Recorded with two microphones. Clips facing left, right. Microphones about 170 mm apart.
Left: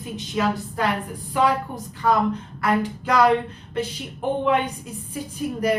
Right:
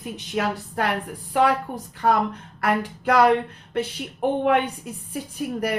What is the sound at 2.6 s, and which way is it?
Speech, 60° right (ahead or behind).